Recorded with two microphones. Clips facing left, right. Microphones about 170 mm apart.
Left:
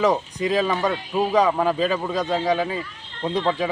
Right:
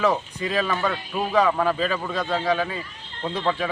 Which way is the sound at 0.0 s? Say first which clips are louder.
Left 2 dB; 15° left (ahead or behind).